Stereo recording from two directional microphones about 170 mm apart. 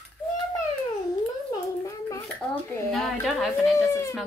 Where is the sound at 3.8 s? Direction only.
15° left (ahead or behind).